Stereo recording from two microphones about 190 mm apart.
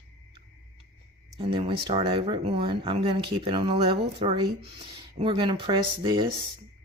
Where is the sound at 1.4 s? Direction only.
30° right (ahead or behind).